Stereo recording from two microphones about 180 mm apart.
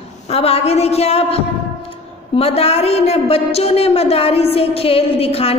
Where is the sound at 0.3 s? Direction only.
35° left (ahead or behind).